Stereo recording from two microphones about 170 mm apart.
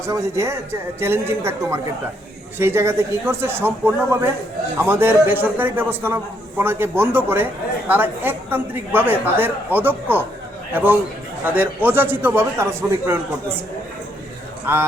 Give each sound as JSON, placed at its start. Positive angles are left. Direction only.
{"t": 0.0, "sound": "a woman's voice", "side_deg": -15}
{"t": 14.6, "sound": "a man's voice", "side_deg": -10}